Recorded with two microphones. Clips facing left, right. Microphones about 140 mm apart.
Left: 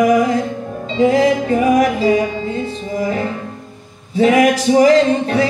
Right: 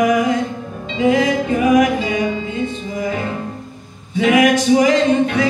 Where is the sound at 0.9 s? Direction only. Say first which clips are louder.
Left 2 dB; 35° left (ahead or behind).